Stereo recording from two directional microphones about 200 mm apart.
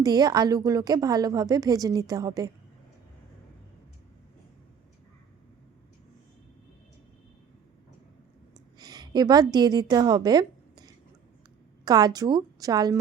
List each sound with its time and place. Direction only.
0.0 s a woman's voice: 20° right (ahead or behind)
8.5 s a sound: 20° right (ahead or behind)
11.9 s a woman's voice: 20° right (ahead or behind)